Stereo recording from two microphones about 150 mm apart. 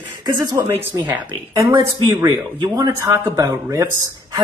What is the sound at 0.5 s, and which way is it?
Speech, 20° right (ahead or behind).